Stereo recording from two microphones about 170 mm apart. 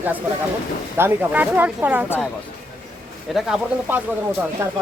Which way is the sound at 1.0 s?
10° right (ahead or behind).